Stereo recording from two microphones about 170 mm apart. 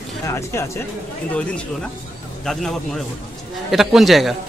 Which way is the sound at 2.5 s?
5° left (ahead or behind).